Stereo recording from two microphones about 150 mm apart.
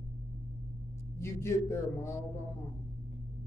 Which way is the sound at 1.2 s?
15° left (ahead or behind).